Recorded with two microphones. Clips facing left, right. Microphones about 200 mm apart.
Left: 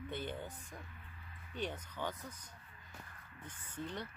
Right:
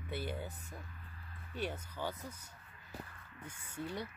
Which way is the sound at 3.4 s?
10° right (ahead or behind).